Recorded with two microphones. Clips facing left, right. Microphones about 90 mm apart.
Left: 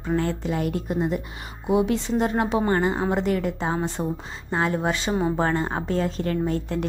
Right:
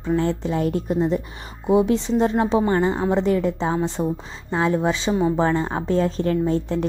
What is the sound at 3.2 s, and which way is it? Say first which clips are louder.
Speech: right 4 dB; 30° right (ahead or behind).